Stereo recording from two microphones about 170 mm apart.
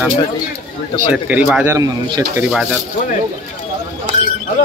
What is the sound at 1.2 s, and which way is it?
Speech, 5° right (ahead or behind).